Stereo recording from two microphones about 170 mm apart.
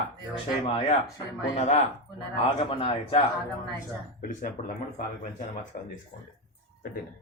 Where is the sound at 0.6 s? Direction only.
40° left (ahead or behind).